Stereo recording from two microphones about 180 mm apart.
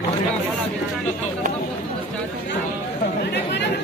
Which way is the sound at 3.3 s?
75° left (ahead or behind).